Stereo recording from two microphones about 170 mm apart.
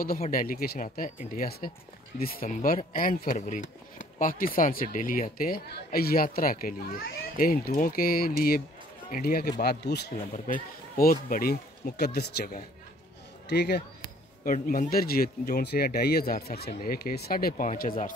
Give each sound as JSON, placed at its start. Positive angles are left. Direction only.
{"t": 0.3, "sound": "speech", "side_deg": 55}
{"t": 10.3, "sound": "speech", "side_deg": 50}
{"t": 14.4, "sound": "speech", "side_deg": 55}